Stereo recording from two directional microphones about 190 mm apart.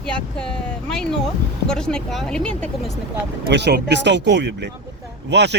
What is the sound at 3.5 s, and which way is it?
Speech, 65° right (ahead or behind).